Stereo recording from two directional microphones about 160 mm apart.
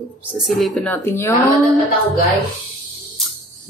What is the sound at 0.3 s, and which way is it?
Speech, centre (ahead or behind).